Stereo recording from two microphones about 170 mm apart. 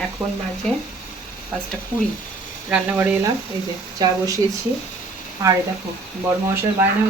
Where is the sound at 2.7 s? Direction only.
5° right (ahead or behind).